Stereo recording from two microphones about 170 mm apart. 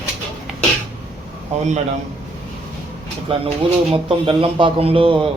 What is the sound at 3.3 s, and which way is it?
Speech, 35° right (ahead or behind).